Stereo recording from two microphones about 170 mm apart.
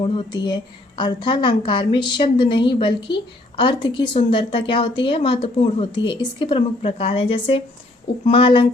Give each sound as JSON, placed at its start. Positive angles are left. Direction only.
{"t": 0.0, "sound": "a woman's voice", "side_deg": 25}